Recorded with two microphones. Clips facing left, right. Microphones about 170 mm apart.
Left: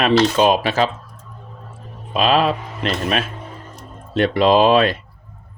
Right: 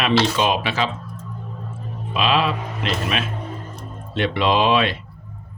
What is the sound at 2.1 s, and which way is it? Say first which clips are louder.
Speech: left 4 dB; 40° left (ahead or behind).